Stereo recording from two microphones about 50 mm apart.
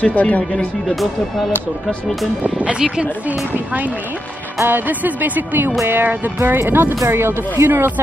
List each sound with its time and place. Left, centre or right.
0.0 s speech: left
2.4 s speech: right
3.5 s music: right
6.6 s speech: right